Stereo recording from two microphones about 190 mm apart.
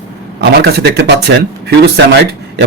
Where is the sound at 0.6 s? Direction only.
60° right (ahead or behind).